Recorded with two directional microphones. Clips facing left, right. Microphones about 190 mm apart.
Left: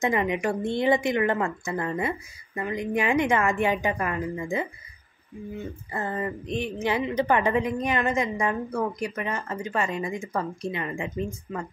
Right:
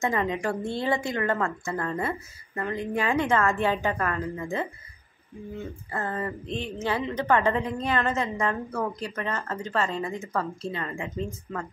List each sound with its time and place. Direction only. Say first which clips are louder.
0.0 s a woman's voice: left 2 dB; 15° left (ahead or behind)
5.9 s a woman's voice: left 1 dB; 15° left (ahead or behind)